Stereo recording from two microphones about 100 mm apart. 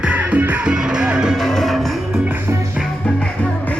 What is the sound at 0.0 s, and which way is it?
Music, 10° right (ahead or behind).